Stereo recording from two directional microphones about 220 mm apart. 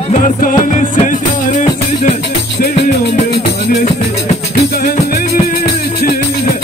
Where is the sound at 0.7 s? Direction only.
35° left (ahead or behind).